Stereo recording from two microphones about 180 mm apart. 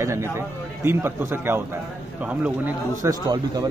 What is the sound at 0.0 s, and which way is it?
A man's voice, 15° right (ahead or behind).